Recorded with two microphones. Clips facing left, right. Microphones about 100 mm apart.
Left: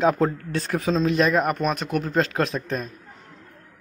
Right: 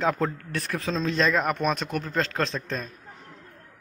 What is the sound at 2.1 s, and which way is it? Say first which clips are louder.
Speech: left 4 dB; 15° left (ahead or behind).